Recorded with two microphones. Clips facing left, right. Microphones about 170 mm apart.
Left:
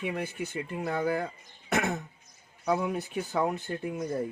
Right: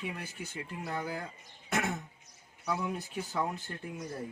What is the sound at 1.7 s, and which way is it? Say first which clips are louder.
Throat clearing: left 4 dB; 65° left (ahead or behind).